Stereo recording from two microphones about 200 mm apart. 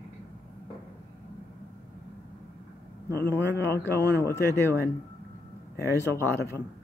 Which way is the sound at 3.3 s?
55° left (ahead or behind).